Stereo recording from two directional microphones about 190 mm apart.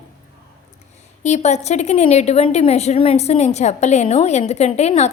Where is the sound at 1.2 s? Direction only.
35° left (ahead or behind).